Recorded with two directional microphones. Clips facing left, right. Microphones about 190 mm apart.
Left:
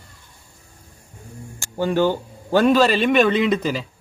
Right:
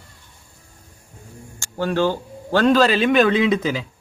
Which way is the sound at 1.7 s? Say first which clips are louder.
Left 1 dB; 15° left (ahead or behind).